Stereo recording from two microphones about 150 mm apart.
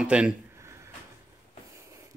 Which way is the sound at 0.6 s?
20° right (ahead or behind).